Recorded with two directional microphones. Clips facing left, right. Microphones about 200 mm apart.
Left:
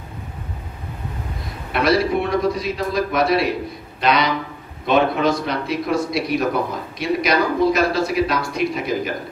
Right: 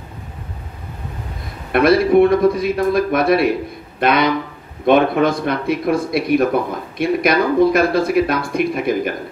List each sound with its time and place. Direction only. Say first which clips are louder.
1.7 s speech: right 5 dB; 55° right (ahead or behind)